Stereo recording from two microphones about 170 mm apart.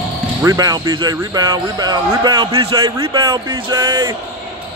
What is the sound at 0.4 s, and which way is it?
A man's voice, 20° right (ahead or behind).